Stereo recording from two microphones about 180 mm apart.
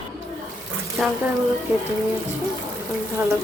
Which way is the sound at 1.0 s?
Centre (ahead or behind).